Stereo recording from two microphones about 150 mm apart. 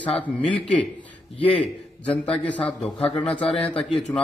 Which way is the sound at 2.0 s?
10° left (ahead or behind).